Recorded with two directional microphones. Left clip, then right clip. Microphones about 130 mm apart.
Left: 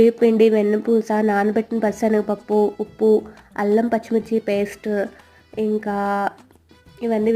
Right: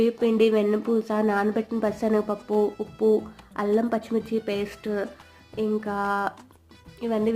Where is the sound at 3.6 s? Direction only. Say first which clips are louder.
Left 5 dB; 35° left (ahead or behind).